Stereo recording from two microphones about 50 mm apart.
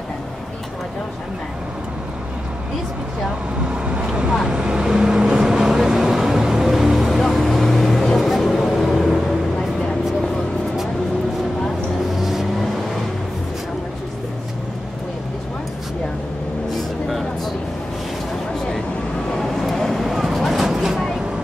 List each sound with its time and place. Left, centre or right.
3.7 s vehicle: centre
12.2 s vehicle: centre
19.3 s a sound: centre